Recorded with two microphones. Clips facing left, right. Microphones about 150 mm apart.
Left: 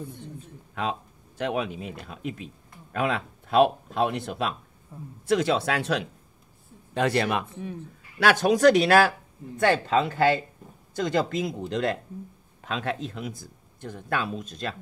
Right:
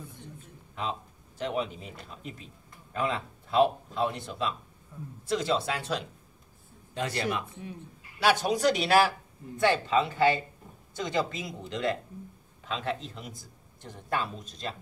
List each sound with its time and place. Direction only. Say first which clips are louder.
1.4 s speech: left 3 dB; 70° left (ahead or behind)